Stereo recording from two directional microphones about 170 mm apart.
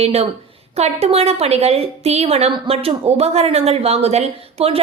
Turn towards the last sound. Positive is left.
turn(degrees=-40)  # may be behind; listen again after turning